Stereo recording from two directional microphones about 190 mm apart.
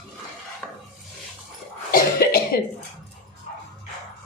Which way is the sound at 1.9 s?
50° left (ahead or behind).